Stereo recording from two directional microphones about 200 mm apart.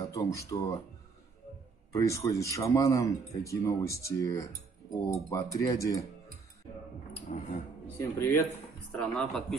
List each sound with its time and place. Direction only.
0.0 s speech: 15° left (ahead or behind)
1.9 s speech: 15° left (ahead or behind)
7.3 s speech: 35° left (ahead or behind)
8.0 s speech: 10° left (ahead or behind)
8.9 s speech: centre (ahead or behind)